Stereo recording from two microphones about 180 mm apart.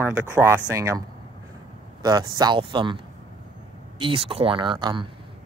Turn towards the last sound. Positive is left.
turn(degrees=-25)  # may be behind; listen again after turning